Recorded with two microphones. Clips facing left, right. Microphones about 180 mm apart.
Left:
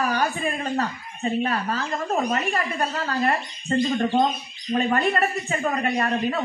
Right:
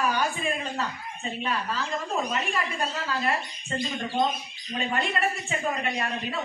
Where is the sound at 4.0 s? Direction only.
55° left (ahead or behind).